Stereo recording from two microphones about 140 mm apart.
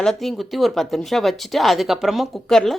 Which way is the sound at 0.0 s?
Centre (ahead or behind).